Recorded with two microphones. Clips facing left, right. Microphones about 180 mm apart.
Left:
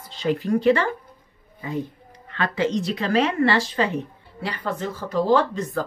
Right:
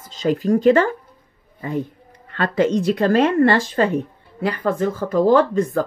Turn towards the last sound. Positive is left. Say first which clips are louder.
# right 5 dB
turn(degrees=-55)  # may be behind; listen again after turning